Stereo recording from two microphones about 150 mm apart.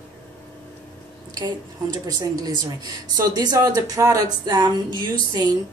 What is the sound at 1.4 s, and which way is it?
Speech, 30° right (ahead or behind).